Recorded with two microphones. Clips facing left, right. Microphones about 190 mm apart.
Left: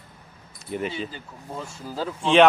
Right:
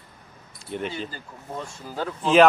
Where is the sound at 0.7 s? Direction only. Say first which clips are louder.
Left 1 dB; 5° left (ahead or behind).